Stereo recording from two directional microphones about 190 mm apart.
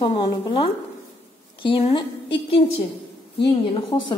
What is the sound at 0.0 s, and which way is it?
A woman's voice, 25° left (ahead or behind).